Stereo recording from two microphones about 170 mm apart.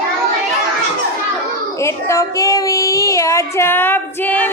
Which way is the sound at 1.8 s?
15° left (ahead or behind).